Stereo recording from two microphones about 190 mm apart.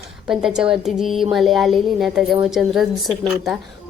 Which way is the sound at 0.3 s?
Centre (ahead or behind).